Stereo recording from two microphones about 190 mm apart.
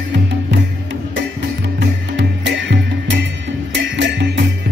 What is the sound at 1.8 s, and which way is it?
Music, 65° right (ahead or behind).